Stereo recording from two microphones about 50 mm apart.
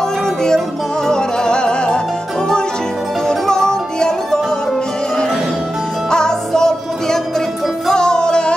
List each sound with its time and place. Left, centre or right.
1.0 s music: centre
3.3 s music: centre
6.0 s music: centre